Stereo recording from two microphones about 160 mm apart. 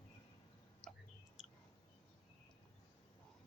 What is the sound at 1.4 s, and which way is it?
Clicking, 5° right (ahead or behind).